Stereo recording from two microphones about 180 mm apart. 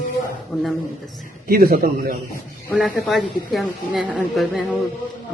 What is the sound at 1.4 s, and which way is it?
Speech, 55° right (ahead or behind).